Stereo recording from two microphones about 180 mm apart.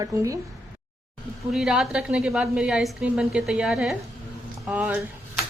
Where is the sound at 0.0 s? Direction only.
20° right (ahead or behind).